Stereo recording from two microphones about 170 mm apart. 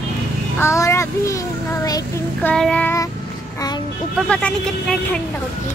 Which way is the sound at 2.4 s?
5° left (ahead or behind).